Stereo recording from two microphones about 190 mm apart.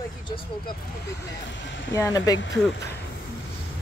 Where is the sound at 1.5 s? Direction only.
70° left (ahead or behind).